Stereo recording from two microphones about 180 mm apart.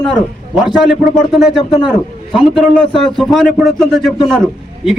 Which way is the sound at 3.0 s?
Centre (ahead or behind).